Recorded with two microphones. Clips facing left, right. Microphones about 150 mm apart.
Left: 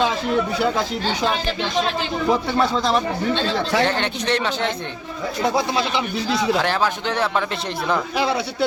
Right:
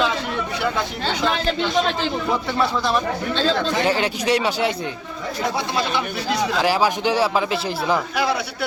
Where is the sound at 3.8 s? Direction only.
5° right (ahead or behind).